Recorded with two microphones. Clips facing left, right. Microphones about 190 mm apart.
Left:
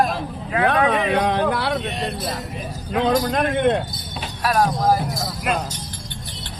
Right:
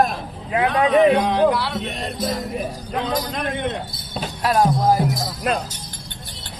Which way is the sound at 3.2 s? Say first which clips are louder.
Left 6 dB; 50° left (ahead or behind).